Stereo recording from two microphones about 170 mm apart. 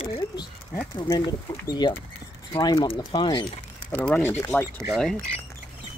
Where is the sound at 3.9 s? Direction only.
10° left (ahead or behind).